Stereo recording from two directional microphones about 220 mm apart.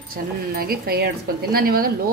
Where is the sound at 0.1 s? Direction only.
45° right (ahead or behind).